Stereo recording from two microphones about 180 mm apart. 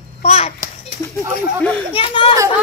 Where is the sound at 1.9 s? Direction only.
30° left (ahead or behind).